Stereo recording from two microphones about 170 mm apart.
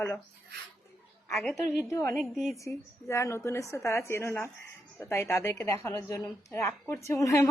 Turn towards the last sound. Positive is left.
turn(degrees=15)  # may be behind; listen again after turning